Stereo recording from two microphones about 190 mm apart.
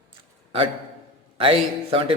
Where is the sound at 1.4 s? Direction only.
30° right (ahead or behind).